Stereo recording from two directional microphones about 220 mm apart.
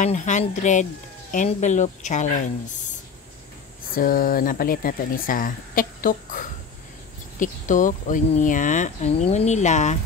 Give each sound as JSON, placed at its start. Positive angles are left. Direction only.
{"t": 0.0, "sound": "speech", "side_deg": 35}
{"t": 3.9, "sound": "speech", "side_deg": 40}